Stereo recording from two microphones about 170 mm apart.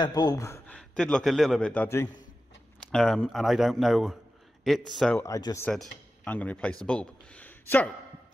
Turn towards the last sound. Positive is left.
turn(degrees=10)  # may be behind; listen again after turning